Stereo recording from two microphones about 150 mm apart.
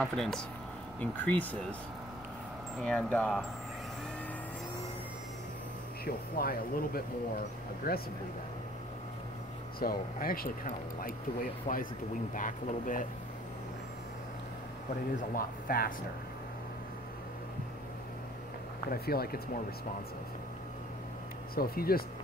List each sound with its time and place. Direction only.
0.0 s speech: 5° left (ahead or behind)
2.8 s speech: 5° left (ahead or behind)
6.0 s speech: 85° left
9.8 s speech: 85° left; by 13.0 s 65° left (ahead or behind)
15.1 s speech: 75° left (ahead or behind)
18.9 s speech: 90° left
21.5 s speech: 85° left